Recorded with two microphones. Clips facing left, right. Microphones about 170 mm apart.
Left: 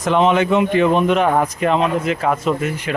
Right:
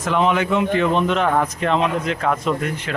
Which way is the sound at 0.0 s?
25° left (ahead or behind).